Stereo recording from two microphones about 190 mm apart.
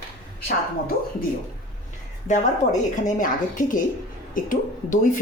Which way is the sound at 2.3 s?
40° left (ahead or behind).